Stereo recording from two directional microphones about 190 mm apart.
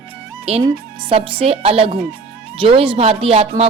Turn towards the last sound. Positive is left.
turn(degrees=-30)  # may be behind; listen again after turning